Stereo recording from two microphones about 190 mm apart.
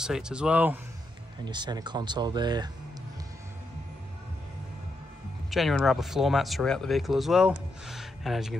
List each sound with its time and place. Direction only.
0.0 s speech: 5° right (ahead or behind)
1.4 s speech: 25° right (ahead or behind)
5.5 s speech: centre (ahead or behind)